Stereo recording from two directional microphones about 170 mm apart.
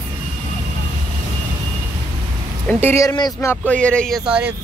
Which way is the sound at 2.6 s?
15° left (ahead or behind).